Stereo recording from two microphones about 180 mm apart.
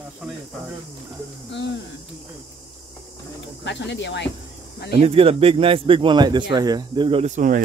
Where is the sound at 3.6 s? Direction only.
80° left.